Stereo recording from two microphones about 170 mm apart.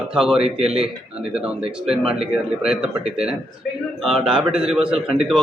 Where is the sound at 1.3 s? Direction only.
5° right (ahead or behind).